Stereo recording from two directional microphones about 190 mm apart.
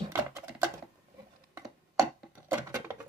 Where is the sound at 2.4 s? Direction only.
10° right (ahead or behind).